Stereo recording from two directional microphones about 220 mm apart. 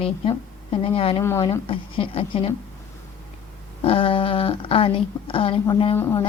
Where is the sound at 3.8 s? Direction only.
25° left (ahead or behind).